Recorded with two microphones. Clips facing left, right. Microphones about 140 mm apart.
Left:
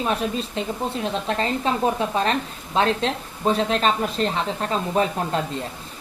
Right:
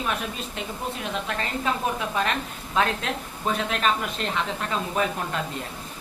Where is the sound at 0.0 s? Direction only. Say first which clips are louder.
Left 6 dB; 30° left (ahead or behind).